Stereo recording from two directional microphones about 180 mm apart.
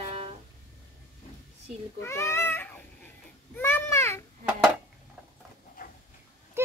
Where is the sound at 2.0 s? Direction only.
15° left (ahead or behind).